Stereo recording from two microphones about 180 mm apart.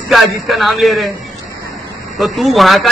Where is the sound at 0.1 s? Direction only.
Centre (ahead or behind).